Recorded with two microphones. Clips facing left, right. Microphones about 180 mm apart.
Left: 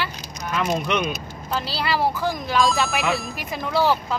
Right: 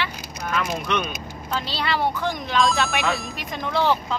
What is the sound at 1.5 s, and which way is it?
Speech, 5° left (ahead or behind).